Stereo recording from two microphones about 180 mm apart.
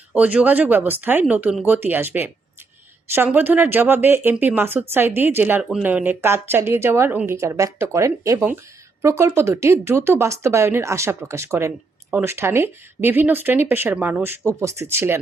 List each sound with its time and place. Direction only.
0.2 s speech: 10° right (ahead or behind)